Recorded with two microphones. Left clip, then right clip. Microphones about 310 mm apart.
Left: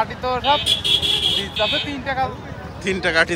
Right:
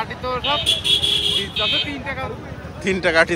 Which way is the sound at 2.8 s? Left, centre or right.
Centre.